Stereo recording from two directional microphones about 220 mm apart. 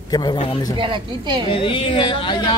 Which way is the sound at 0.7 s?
20° right (ahead or behind).